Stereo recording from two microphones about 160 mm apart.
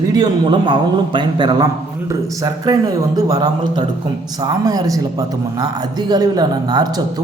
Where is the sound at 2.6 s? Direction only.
25° right (ahead or behind).